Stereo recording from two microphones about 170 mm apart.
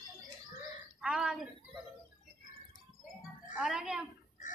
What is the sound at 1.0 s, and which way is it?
Speech, centre (ahead or behind).